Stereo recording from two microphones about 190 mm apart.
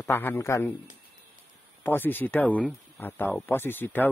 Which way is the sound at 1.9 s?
10° left (ahead or behind).